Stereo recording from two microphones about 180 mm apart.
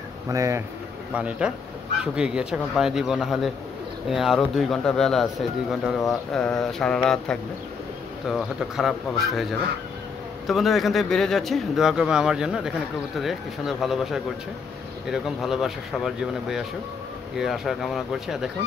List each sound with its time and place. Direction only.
0.3 s speech: 15° right (ahead or behind); by 18.5 s centre (ahead or behind)